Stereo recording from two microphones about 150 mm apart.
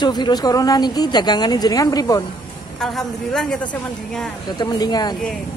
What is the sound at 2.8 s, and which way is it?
Speech, 5° left (ahead or behind).